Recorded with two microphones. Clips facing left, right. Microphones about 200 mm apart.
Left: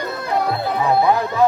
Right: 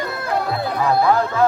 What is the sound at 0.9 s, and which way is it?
Speech, 20° left (ahead or behind).